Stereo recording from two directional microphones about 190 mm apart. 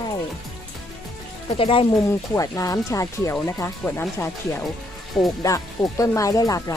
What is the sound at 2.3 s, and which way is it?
Speech, 20° left (ahead or behind).